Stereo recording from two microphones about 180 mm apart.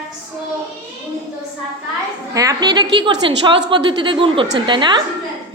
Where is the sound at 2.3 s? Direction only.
20° right (ahead or behind).